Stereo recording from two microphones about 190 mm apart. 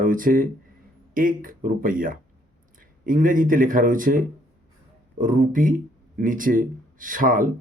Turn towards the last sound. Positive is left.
turn(degrees=-45)  # may be behind; listen again after turning